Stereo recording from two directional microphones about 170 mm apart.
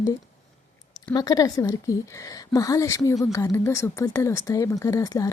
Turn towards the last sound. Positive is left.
turn(degrees=20)  # may be behind; listen again after turning